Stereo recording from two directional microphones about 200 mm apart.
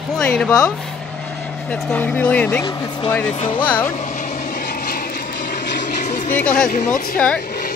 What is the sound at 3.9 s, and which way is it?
Vehicle, 40° left (ahead or behind).